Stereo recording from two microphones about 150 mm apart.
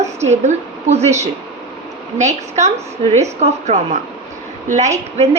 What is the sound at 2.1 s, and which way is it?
A woman's voice, 50° right (ahead or behind).